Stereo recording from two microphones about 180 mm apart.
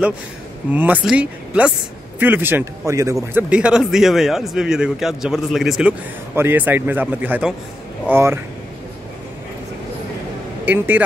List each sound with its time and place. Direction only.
0.7 s speech: 10° right (ahead or behind)
3.4 s a man's voice: 5° right (ahead or behind)
10.6 s speech: 10° right (ahead or behind)